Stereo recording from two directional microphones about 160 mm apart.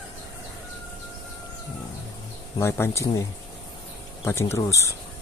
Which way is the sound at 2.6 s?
15° left (ahead or behind).